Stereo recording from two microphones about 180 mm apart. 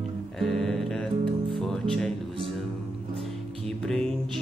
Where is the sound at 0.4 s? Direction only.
Centre (ahead or behind).